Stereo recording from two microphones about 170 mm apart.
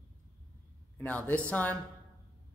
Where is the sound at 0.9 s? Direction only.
10° left (ahead or behind).